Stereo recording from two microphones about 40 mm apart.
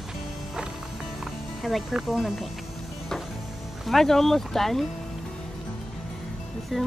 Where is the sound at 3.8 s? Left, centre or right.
Centre.